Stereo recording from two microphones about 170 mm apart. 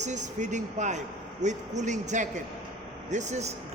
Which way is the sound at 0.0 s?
45° right (ahead or behind).